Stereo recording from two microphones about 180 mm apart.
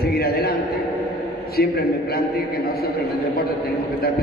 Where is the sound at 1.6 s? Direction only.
60° left (ahead or behind).